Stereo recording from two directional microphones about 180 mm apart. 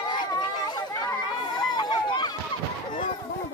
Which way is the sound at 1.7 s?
25° left (ahead or behind).